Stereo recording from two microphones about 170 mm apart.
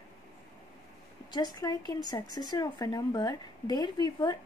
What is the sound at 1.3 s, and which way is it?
Speech, 25° left (ahead or behind).